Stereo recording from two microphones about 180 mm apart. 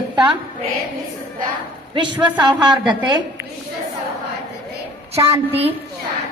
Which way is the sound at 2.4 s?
25° right (ahead or behind).